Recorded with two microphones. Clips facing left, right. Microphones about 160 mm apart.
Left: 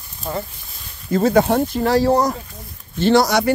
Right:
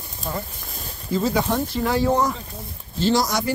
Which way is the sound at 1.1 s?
60° left (ahead or behind).